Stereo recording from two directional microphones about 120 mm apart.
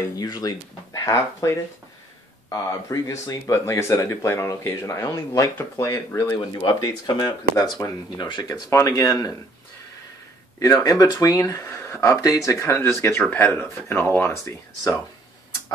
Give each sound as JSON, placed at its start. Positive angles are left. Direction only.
{"t": 0.2, "sound": "speech", "side_deg": 30}
{"t": 8.5, "sound": "speech", "side_deg": 25}
{"t": 10.6, "sound": "speech", "side_deg": 30}